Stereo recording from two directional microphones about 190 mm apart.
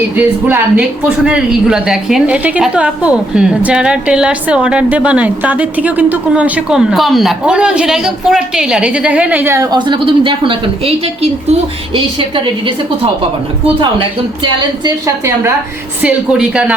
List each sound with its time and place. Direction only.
0.2 s speech: 10° right (ahead or behind)
9.7 s a woman's voice: 25° right (ahead or behind)
13.7 s a woman's voice: 25° right (ahead or behind)
14.8 s a woman's voice: 15° right (ahead or behind)